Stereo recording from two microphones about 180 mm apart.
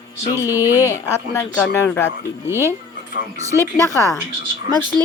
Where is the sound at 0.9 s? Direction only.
15° left (ahead or behind).